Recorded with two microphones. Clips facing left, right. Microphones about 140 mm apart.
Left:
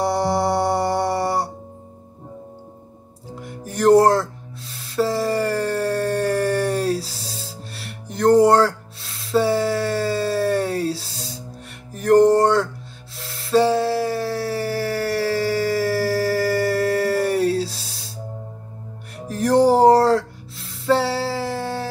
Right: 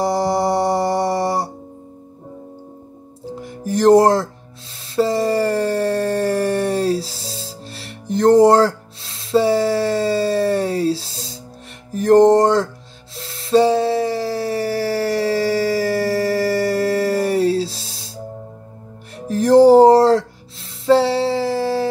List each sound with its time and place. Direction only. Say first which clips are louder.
0.0 s music: right 2 dB; 25° right (ahead or behind)
3.6 s music: right 2 dB; 25° right (ahead or behind)
4.8 s a sound: right 3 dB; 25° right (ahead or behind)
7.6 s music: right 4 dB; 25° right (ahead or behind)
9.3 s a sound: right 3 dB; 25° right (ahead or behind)
12.0 s music: right 3 dB; 25° right (ahead or behind)
13.5 s howl: right 3 dB; 20° right (ahead or behind)
15.8 s a sound: right 2 dB; 25° right (ahead or behind)
19.2 s music: right 6 dB; 25° right (ahead or behind)